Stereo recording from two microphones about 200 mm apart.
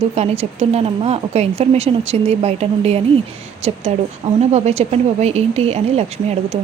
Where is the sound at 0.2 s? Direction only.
30° right (ahead or behind).